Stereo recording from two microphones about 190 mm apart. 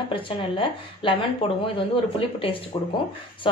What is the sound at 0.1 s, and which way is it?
A woman's voice, 25° left (ahead or behind).